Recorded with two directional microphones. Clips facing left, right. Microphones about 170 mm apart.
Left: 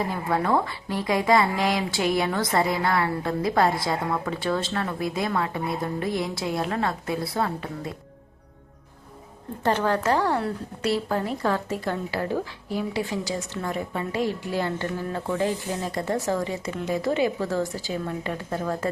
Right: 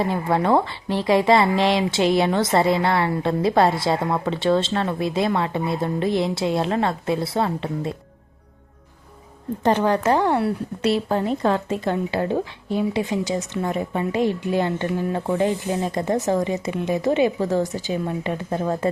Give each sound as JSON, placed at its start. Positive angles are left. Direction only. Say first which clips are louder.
{"t": 0.1, "sound": "speech", "louder": "right 4 dB", "side_deg": -25}
{"t": 9.6, "sound": "speech", "louder": "right 4 dB", "side_deg": -20}